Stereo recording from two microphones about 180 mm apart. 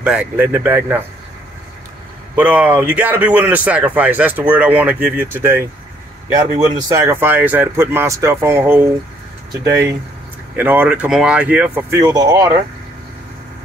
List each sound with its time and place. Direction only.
0.0 s a man's voice: 5° right (ahead or behind)
2.3 s a man's voice: 10° right (ahead or behind)
10.5 s a man's voice: 10° right (ahead or behind)